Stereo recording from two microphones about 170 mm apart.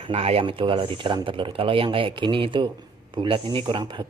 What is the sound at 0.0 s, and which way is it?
Speech, 35° right (ahead or behind).